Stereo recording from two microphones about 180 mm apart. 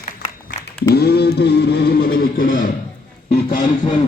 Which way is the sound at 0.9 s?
65° left (ahead or behind).